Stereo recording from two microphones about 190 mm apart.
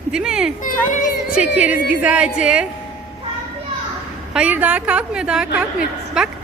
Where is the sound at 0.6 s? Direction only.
45° left (ahead or behind).